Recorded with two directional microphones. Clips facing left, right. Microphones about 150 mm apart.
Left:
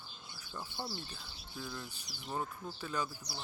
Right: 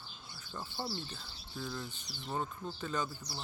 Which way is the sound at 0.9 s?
10° left (ahead or behind).